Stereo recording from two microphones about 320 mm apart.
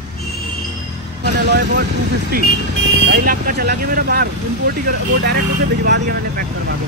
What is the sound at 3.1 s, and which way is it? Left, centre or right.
Speech, right.